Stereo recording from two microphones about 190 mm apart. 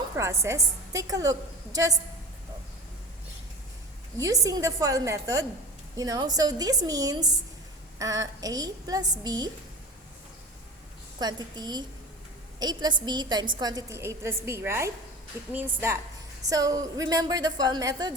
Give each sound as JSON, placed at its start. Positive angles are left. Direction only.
{"t": 0.4, "sound": "a woman's voice", "side_deg": -15}
{"t": 4.2, "sound": "a woman's voice", "side_deg": -20}
{"t": 11.2, "sound": "a woman's voice", "side_deg": -20}